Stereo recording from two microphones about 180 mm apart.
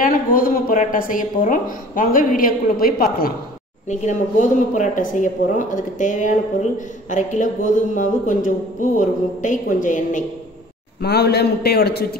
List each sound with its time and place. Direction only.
0.0 s speech: 50° left (ahead or behind)
3.9 s speech: 40° left (ahead or behind)
11.0 s a man's voice: 65° left (ahead or behind)